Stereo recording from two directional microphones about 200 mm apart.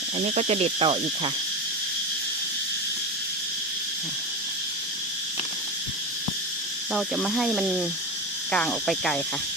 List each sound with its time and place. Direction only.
0.3 s speech: 35° right (ahead or behind)
6.9 s cricket: centre (ahead or behind)